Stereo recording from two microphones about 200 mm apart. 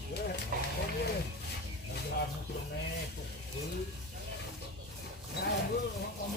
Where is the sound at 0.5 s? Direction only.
45° right (ahead or behind).